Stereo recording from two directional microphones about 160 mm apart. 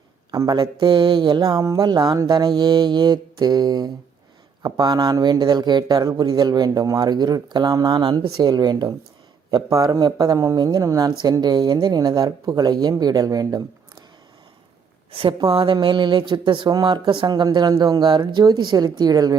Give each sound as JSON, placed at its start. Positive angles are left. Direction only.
{"t": 0.3, "sound": "speech", "side_deg": -25}
{"t": 15.2, "sound": "speech", "side_deg": -35}